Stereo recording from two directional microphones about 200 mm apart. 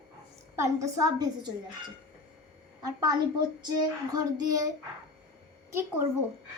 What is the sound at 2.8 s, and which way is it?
A woman's voice, 20° right (ahead or behind).